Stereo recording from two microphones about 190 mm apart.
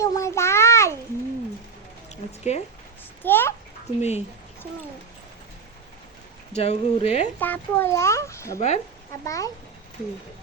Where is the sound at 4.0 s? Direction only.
35° left (ahead or behind).